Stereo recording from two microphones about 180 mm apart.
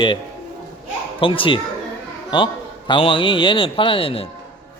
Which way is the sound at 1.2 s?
30° left (ahead or behind).